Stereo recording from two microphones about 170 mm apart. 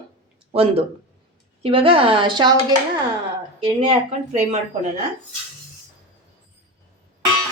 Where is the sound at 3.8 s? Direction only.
40° right (ahead or behind).